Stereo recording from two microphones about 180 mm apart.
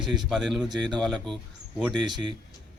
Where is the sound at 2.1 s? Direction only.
25° right (ahead or behind).